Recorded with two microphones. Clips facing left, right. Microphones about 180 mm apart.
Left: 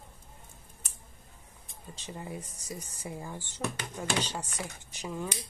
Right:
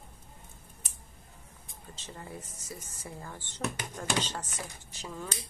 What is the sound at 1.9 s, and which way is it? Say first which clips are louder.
Speech: left 4 dB; 15° left (ahead or behind).